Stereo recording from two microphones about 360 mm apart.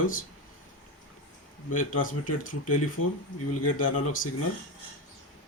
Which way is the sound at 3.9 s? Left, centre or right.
Left.